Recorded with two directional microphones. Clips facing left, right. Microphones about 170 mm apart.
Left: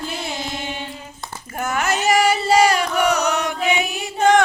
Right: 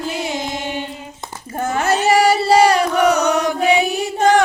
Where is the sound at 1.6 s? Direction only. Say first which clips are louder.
Right 4 dB; 30° right (ahead or behind).